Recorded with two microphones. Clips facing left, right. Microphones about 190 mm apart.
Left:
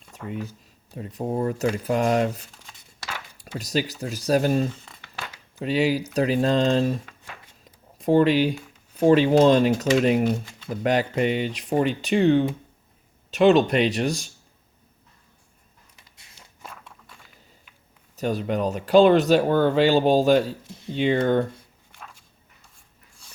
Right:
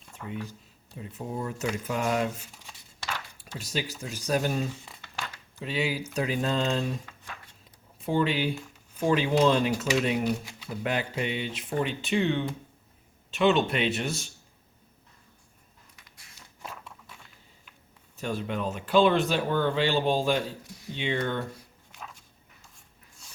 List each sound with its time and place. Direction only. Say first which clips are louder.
0.9 s speech: left 8 dB; 50° left (ahead or behind)
3.6 s speech: left 7 dB; 40° left (ahead or behind)
7.9 s speech: left 8 dB; 40° left (ahead or behind)
18.2 s speech: left 7 dB; 40° left (ahead or behind)